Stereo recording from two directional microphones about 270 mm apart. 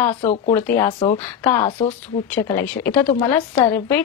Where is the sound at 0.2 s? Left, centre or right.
Left.